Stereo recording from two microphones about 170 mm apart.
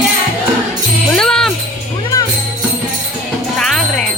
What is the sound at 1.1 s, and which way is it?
Jingle bell, 5° left (ahead or behind).